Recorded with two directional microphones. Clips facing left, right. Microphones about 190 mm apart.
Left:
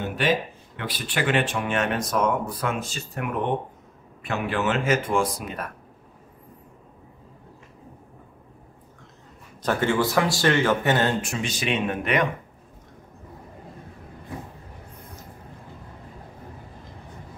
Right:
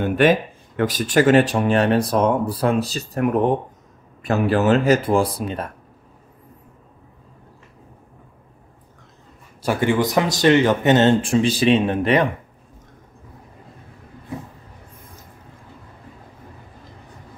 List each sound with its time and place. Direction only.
0.0 s speech: 55° right (ahead or behind); by 5.7 s 30° right (ahead or behind)
9.6 s speech: 10° right (ahead or behind); by 12.3 s 30° right (ahead or behind)